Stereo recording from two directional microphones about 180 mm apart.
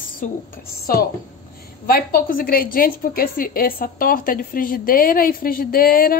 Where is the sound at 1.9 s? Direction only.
55° left (ahead or behind).